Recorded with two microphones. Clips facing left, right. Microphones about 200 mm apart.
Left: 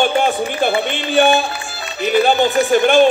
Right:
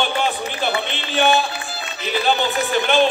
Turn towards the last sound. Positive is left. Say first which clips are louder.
# left 6 dB
turn(degrees=45)  # may be behind; listen again after turning